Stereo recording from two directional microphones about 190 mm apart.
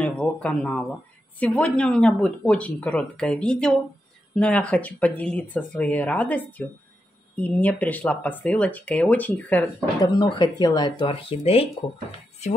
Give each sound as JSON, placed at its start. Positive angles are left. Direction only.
{"t": 0.0, "sound": "speech", "side_deg": 5}
{"t": 10.0, "sound": "speech", "side_deg": 25}